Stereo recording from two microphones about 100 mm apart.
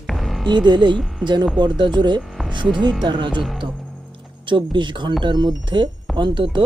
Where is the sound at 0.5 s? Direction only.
45° right (ahead or behind).